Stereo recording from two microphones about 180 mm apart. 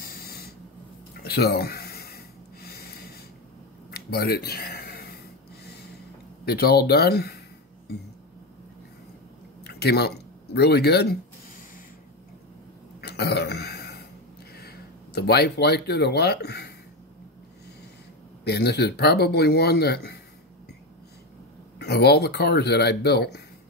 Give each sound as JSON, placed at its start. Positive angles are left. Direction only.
{"t": 0.0, "sound": "a sound", "side_deg": 55}
{"t": 6.4, "sound": "speech", "side_deg": 60}
{"t": 9.6, "sound": "a sound", "side_deg": 65}
{"t": 13.0, "sound": "throat clearing", "side_deg": 65}
{"t": 14.5, "sound": "speech", "side_deg": 60}
{"t": 18.4, "sound": "speech", "side_deg": 65}
{"t": 21.7, "sound": "speech", "side_deg": 65}